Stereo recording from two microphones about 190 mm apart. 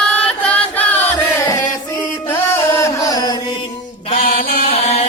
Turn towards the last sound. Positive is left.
turn(degrees=35)  # may be behind; listen again after turning